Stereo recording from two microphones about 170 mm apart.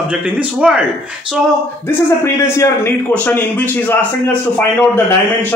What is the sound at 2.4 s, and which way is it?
A man's voice, 15° left (ahead or behind).